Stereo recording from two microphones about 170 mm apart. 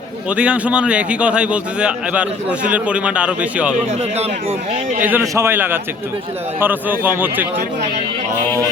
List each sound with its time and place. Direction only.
0.3 s a man's voice: 5° right (ahead or behind)
4.2 s a man's voice: 40° right (ahead or behind)
5.0 s a man's voice: 15° right (ahead or behind)